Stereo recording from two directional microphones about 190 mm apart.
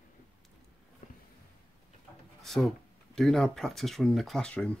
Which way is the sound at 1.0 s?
45° left (ahead or behind).